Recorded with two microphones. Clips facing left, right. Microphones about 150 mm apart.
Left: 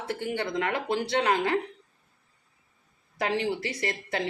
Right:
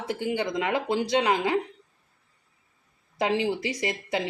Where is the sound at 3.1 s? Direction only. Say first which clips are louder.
Right 3 dB; 20° right (ahead or behind).